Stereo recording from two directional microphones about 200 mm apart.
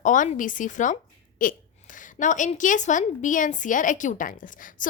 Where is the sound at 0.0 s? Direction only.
40° left (ahead or behind).